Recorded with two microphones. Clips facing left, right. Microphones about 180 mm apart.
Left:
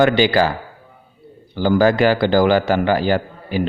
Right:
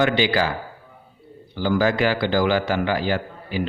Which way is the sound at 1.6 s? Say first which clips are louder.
Left 6 dB; 40° left (ahead or behind).